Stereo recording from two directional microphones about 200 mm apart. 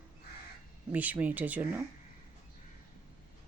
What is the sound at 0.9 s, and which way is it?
Speech, 10° right (ahead or behind).